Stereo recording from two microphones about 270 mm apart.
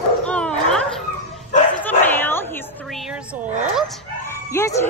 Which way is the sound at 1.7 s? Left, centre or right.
Centre.